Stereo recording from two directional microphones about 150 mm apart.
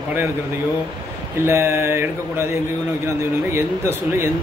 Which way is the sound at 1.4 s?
15° right (ahead or behind).